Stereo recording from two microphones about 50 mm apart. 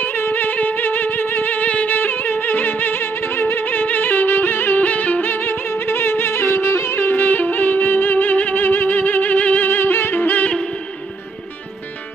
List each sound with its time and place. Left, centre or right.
0.0 s music: left
4.7 s music: left
9.7 s music: left